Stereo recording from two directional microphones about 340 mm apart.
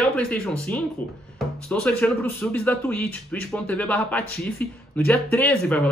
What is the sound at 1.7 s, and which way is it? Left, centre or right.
Speech, centre.